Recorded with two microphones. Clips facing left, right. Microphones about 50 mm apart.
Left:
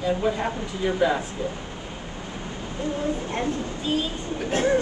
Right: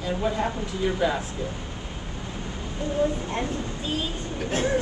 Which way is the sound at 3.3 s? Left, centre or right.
Centre.